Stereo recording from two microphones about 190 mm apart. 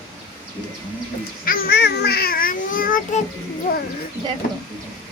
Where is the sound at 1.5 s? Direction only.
50° left (ahead or behind).